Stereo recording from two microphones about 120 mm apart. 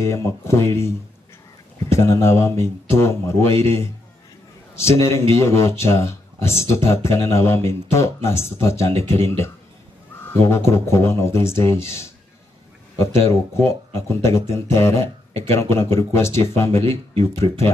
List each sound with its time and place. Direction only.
0.0 s speech: 25° left (ahead or behind)